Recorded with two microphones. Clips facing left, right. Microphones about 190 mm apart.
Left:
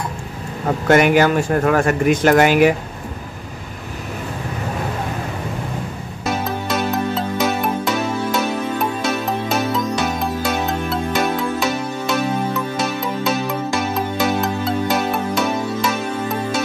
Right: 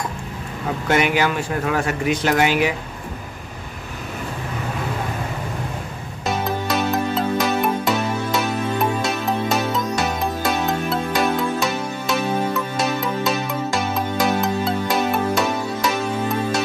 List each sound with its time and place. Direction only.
0.7 s speech: 50° left (ahead or behind)
6.2 s music: centre (ahead or behind)